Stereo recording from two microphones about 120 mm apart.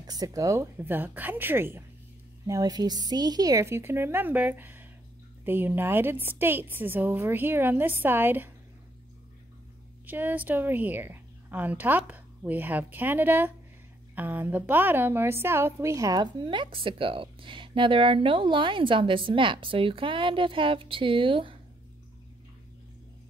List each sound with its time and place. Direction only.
0.0 s a woman's voice: 30° right (ahead or behind)
2.4 s a woman's voice: 30° right (ahead or behind)
10.0 s a woman's voice: 15° right (ahead or behind); by 21.5 s 45° right (ahead or behind)